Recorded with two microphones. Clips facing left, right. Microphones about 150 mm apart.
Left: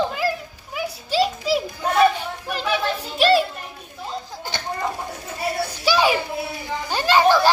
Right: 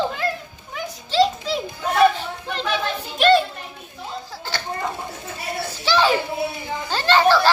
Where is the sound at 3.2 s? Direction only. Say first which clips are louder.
Right 1 dB; 5° left (ahead or behind).